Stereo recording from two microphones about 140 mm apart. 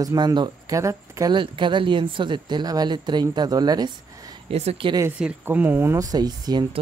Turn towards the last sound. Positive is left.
turn(degrees=-30)  # may be behind; listen again after turning